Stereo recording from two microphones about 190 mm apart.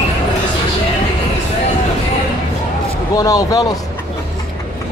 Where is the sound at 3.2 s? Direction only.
20° left (ahead or behind).